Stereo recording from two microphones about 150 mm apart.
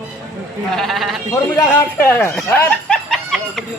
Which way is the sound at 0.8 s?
Centre (ahead or behind).